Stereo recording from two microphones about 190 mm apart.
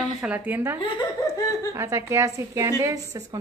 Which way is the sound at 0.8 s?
25° left (ahead or behind).